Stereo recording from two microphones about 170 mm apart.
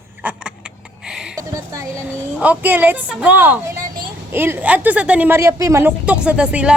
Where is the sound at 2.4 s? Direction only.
10° right (ahead or behind).